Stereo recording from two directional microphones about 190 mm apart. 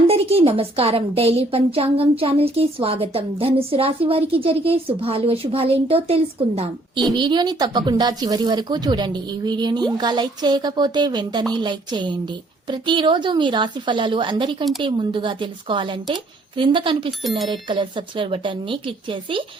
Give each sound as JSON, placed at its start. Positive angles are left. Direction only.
{"t": 0.1, "sound": "a woman's voice", "side_deg": -30}
{"t": 17.2, "sound": "speech", "side_deg": 0}
{"t": 17.5, "sound": "a woman's voice", "side_deg": -25}